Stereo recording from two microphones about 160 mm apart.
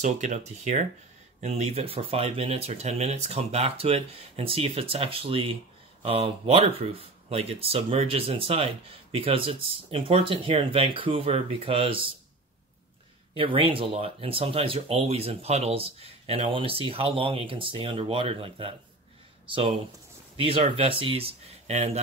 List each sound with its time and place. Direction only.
0.0 s speech: 45° right (ahead or behind)
13.3 s speech: 35° right (ahead or behind)
20.3 s speech: 35° right (ahead or behind)